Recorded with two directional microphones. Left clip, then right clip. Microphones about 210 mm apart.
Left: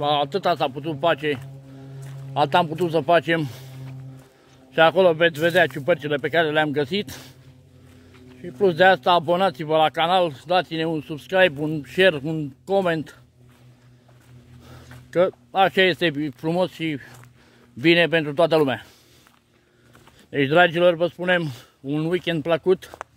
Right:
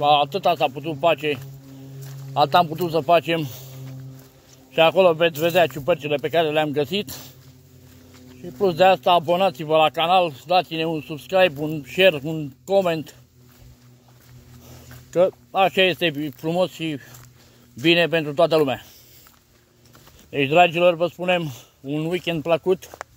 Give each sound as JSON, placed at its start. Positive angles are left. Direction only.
{"t": 0.0, "sound": "speech", "side_deg": 20}
{"t": 4.7, "sound": "speech", "side_deg": 15}
{"t": 8.4, "sound": "speech", "side_deg": 15}
{"t": 15.0, "sound": "speech", "side_deg": 15}
{"t": 20.2, "sound": "speech", "side_deg": 25}